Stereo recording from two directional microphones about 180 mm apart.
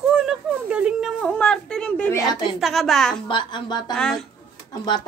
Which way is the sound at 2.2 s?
20° left (ahead or behind).